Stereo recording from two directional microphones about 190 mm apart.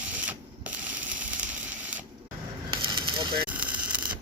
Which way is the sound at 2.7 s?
25° right (ahead or behind).